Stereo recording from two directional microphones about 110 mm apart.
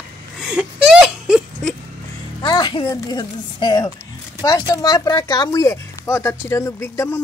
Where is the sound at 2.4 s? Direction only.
40° left (ahead or behind).